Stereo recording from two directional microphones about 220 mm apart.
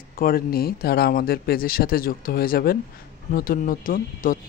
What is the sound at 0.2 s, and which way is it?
Speech, 45° left (ahead or behind).